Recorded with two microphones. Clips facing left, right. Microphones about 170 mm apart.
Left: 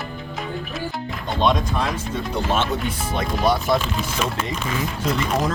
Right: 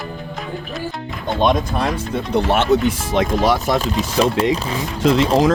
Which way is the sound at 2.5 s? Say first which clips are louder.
Right 8 dB; 75° right (ahead or behind).